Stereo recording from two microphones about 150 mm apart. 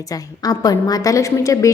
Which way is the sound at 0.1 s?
25° left (ahead or behind).